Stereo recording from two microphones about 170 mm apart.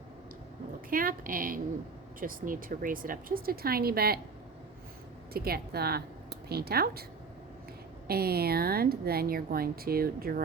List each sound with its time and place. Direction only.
0.9 s a woman's voice: 55° right (ahead or behind)
5.3 s a woman's voice: 65° right (ahead or behind)
8.0 s a woman's voice: 65° right (ahead or behind)